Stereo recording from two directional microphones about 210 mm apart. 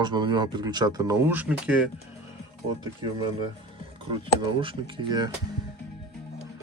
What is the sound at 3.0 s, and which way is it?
Speech, 20° right (ahead or behind).